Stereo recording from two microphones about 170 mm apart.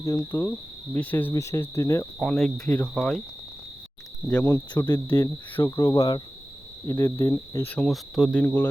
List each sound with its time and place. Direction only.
0.0 s cricket: 15° left (ahead or behind)
2.2 s cricket: 5° left (ahead or behind)
4.3 s cricket: 15° left (ahead or behind)